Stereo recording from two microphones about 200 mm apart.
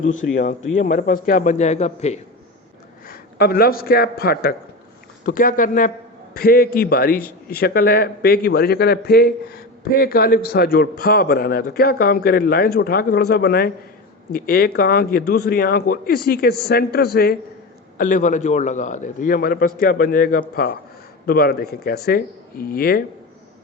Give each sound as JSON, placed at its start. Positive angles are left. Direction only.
{"t": 0.0, "sound": "a man's voice", "side_deg": 40}
{"t": 3.1, "sound": "a man's voice", "side_deg": 50}